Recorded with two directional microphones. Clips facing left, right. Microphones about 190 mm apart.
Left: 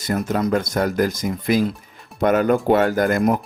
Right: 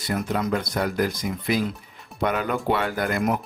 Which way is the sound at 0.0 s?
45° left (ahead or behind).